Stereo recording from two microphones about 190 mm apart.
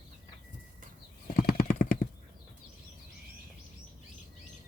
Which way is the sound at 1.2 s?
50° left (ahead or behind).